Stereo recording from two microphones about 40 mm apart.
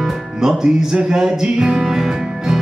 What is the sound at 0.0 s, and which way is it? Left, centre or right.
Music, centre.